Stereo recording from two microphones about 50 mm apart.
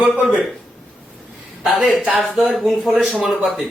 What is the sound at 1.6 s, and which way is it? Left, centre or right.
A man's voice, centre.